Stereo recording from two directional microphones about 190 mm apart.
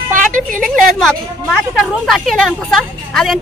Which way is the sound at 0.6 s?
Centre (ahead or behind).